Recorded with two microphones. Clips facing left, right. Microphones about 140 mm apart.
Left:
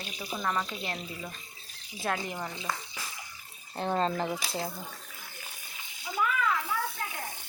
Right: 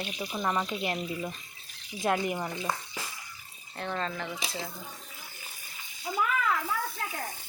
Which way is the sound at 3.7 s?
30° left (ahead or behind).